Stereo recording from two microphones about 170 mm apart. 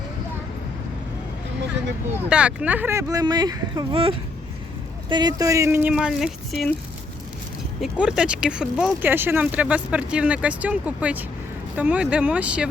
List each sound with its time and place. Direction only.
2.1 s speech: 5° right (ahead or behind)
7.8 s speech: 5° right (ahead or behind)